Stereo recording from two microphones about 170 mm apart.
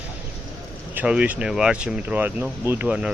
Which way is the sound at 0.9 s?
5° right (ahead or behind).